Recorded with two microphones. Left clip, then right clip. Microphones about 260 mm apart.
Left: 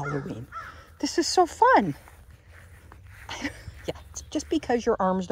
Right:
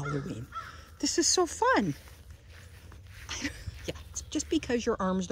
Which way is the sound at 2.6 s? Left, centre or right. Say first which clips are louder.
Left 4 dB; centre.